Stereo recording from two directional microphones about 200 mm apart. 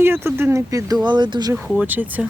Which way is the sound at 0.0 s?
10° right (ahead or behind).